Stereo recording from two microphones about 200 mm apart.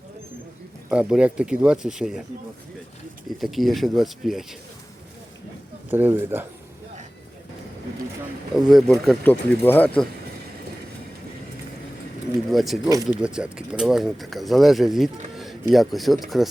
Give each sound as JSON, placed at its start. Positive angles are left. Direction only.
{"t": 0.9, "sound": "speech", "side_deg": -5}
{"t": 3.4, "sound": "speech", "side_deg": 0}
{"t": 5.9, "sound": "speech", "side_deg": -10}
{"t": 8.5, "sound": "speech", "side_deg": 0}
{"t": 12.5, "sound": "speech", "side_deg": 0}
{"t": 12.9, "sound": "speech", "side_deg": -15}
{"t": 13.2, "sound": "speech", "side_deg": -5}